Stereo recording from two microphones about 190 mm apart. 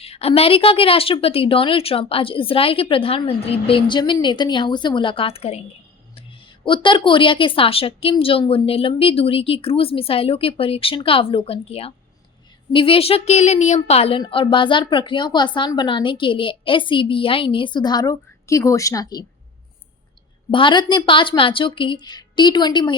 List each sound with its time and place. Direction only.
0.0 s a woman's voice: 30° left (ahead or behind)
20.5 s a woman's voice: 25° left (ahead or behind)